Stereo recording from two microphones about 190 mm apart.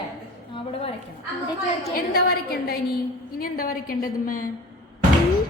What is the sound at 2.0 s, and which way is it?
A child's voice, 50° left (ahead or behind).